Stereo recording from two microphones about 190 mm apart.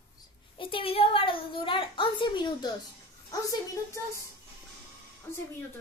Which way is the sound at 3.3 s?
15° left (ahead or behind).